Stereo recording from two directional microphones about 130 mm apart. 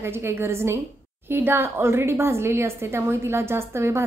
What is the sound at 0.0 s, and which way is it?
A woman's voice, 20° right (ahead or behind).